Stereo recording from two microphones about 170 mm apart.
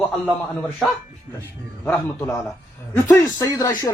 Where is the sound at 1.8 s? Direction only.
10° left (ahead or behind).